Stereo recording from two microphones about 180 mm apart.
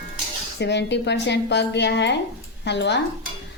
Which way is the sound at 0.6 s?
70° left (ahead or behind).